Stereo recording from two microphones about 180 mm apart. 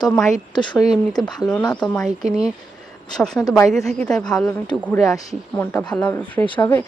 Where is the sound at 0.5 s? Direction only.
25° left (ahead or behind).